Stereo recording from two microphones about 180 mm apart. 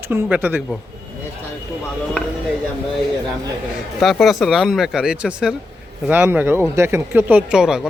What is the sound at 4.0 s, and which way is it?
Speech, centre (ahead or behind).